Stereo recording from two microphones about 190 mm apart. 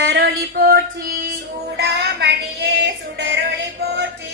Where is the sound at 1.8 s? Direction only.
60° right (ahead or behind).